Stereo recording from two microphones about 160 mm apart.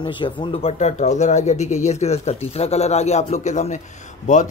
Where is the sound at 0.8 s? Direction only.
45° left (ahead or behind).